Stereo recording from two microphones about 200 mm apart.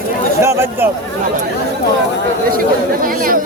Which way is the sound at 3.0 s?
45° right (ahead or behind).